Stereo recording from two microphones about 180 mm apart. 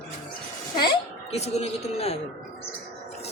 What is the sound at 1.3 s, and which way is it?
Speech, 35° left (ahead or behind).